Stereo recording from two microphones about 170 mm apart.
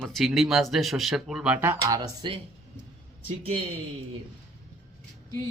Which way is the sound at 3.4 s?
35° right (ahead or behind).